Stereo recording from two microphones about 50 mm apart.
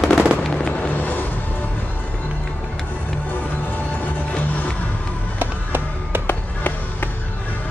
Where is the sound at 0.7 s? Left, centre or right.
Left.